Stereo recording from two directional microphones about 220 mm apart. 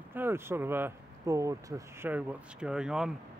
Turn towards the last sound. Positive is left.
turn(degrees=-5)  # may be behind; listen again after turning